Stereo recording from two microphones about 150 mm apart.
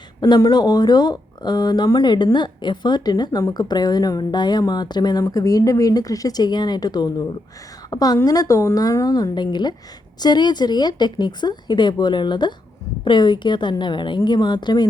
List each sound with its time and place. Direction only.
0.2 s a woman's voice: 25° left (ahead or behind)